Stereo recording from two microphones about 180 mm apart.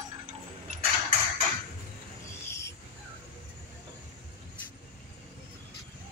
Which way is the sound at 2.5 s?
15° left (ahead or behind).